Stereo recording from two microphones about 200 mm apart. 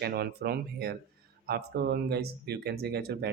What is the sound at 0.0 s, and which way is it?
Speech, 50° right (ahead or behind).